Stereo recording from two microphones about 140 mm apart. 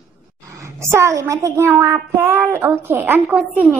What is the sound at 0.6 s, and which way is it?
A child's voice, 20° right (ahead or behind).